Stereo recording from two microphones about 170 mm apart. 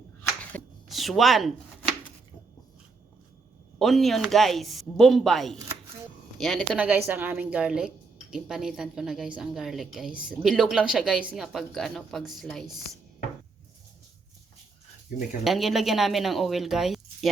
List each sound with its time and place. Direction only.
0.5 s speech: 10° left (ahead or behind)
3.8 s speech: centre (ahead or behind)
15.4 s speech: centre (ahead or behind)